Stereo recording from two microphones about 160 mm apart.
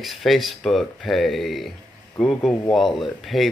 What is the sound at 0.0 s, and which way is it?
Speech, centre (ahead or behind).